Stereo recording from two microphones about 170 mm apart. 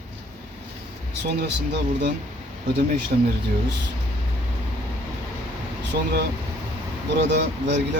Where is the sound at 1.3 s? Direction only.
80° right.